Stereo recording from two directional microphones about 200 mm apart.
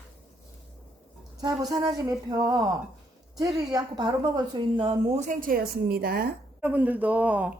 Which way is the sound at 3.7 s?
20° right (ahead or behind).